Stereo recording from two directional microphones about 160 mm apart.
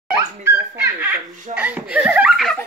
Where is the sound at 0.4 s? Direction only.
15° right (ahead or behind).